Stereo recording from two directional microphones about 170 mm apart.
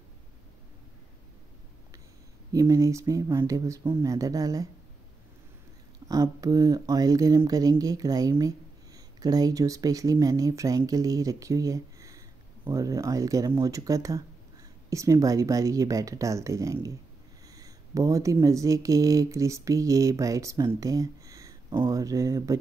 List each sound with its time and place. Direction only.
2.5 s speech: 20° right (ahead or behind)
6.0 s speech: 20° right (ahead or behind)